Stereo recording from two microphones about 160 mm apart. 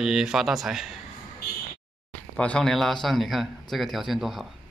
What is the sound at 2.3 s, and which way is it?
Speech, 5° left (ahead or behind).